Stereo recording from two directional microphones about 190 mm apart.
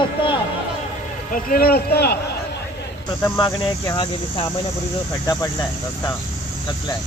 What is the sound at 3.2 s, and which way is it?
Cricket, 20° left (ahead or behind).